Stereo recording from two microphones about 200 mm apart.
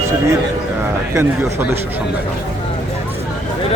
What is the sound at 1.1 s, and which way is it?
Speech, 10° right (ahead or behind).